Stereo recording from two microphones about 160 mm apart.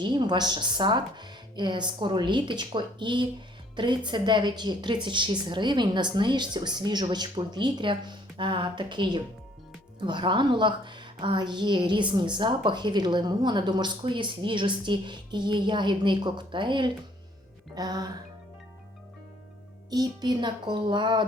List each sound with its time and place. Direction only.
0.0 s a woman's voice: 30° right (ahead or behind)
19.9 s a woman's voice: 25° right (ahead or behind)